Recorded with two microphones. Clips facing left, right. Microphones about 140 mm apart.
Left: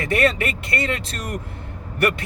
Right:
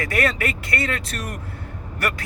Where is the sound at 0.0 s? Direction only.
25° left (ahead or behind).